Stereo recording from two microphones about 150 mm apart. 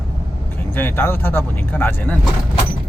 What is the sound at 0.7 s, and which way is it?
Speech, 15° left (ahead or behind).